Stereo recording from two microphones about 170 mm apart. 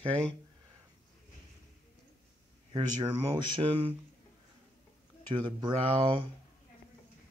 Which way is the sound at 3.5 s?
30° right (ahead or behind).